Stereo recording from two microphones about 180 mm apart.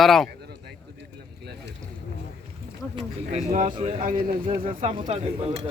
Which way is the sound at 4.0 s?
50° right (ahead or behind).